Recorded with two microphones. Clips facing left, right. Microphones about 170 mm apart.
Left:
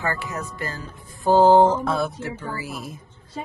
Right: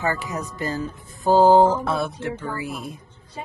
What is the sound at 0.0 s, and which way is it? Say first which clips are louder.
Speech: right 2 dB; 15° right (ahead or behind).